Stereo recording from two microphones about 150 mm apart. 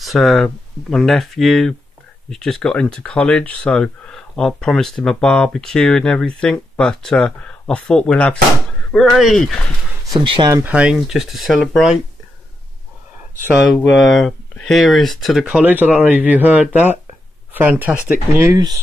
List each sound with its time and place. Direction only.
0.0 s speech: centre (ahead or behind)
10.1 s speech: 30° right (ahead or behind)
10.6 s speech: 10° right (ahead or behind)
13.8 s speech: centre (ahead or behind); by 18.8 s 25° right (ahead or behind)